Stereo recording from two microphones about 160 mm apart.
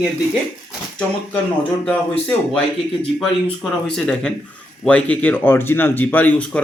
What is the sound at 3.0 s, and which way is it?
Speech, 5° left (ahead or behind).